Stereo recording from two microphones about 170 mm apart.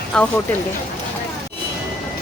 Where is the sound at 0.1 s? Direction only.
5° left (ahead or behind).